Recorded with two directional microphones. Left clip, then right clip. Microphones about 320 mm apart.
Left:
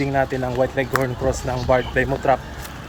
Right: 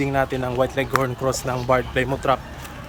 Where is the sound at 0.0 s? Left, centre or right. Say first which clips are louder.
Left 1 dB; centre.